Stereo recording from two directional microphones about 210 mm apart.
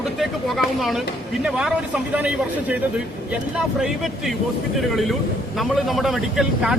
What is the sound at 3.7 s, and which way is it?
A man's voice, centre (ahead or behind).